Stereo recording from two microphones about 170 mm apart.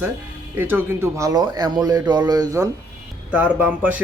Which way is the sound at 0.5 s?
10° right (ahead or behind).